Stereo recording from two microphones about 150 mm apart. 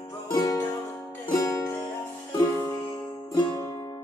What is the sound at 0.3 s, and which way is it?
Music, 25° left (ahead or behind).